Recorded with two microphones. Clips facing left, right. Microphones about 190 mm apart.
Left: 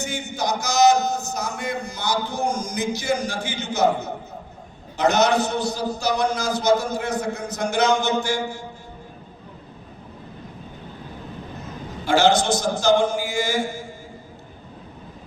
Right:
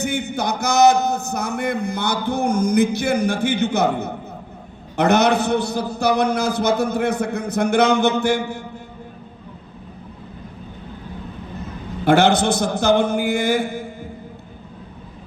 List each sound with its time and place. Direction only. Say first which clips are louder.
0.0 s a man's voice: right 4 dB; 60° right (ahead or behind)
12.0 s a man's voice: right 3 dB; 60° right (ahead or behind)